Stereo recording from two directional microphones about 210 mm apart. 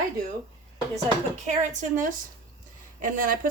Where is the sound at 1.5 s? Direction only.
35° right (ahead or behind).